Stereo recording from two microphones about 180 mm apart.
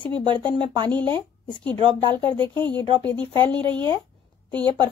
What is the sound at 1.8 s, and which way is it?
Speech, 30° right (ahead or behind).